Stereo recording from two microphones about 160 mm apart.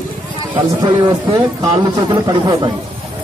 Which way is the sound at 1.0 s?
20° right (ahead or behind).